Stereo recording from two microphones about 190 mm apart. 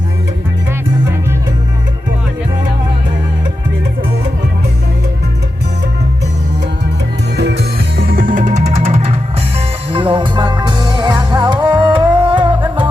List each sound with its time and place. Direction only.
7.3 s music: 65° right (ahead or behind); by 12.9 s 25° right (ahead or behind)